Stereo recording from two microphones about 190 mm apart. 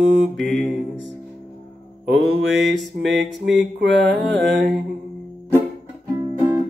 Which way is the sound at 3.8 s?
65° right (ahead or behind).